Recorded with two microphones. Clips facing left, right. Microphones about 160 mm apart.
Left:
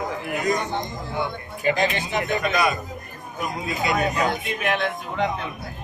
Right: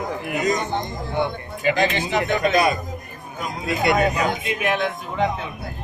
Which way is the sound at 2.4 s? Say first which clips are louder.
Right 4 dB; 35° right (ahead or behind).